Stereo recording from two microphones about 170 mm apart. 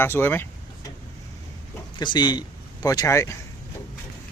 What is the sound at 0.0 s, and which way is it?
Speech, 15° left (ahead or behind).